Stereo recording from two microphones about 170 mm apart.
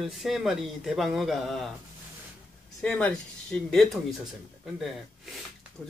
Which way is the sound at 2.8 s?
5° left (ahead or behind).